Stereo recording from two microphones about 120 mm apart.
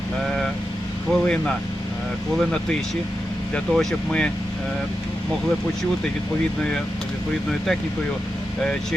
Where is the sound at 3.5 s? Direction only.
5° left (ahead or behind).